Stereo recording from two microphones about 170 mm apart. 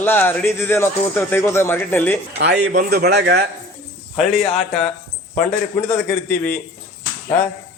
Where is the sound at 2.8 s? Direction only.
65° right (ahead or behind).